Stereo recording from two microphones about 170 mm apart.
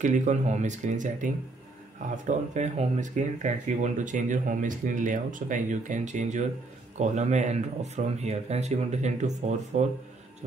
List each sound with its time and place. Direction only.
0.0 s speech: 45° right (ahead or behind)